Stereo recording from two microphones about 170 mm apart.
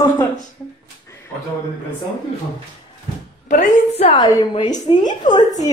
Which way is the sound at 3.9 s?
30° left (ahead or behind).